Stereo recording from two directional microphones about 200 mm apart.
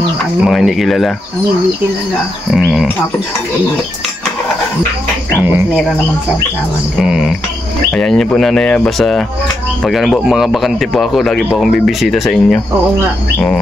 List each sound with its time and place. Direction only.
0.4 s speech: centre (ahead or behind)
2.5 s speech: centre (ahead or behind)
5.3 s speech: 10° right (ahead or behind)
7.0 s speech: centre (ahead or behind)